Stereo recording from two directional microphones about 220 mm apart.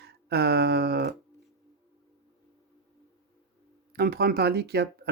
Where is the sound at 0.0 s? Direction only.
50° right (ahead or behind).